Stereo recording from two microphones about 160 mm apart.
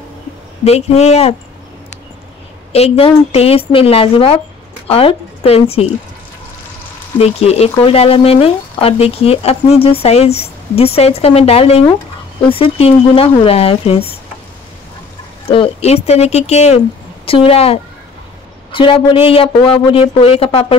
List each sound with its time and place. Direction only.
0.7 s speech: 40° left (ahead or behind)
2.7 s speech: 40° left (ahead or behind)
7.2 s speech: 40° left (ahead or behind)
15.4 s speech: 35° left (ahead or behind)